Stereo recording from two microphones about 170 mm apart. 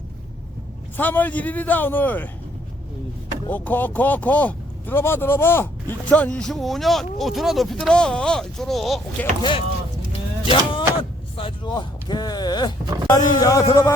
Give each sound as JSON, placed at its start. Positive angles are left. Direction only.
{"t": 0.9, "sound": "a man's voice", "side_deg": 10}
{"t": 3.5, "sound": "speech", "side_deg": 10}
{"t": 9.4, "sound": "speech", "side_deg": 30}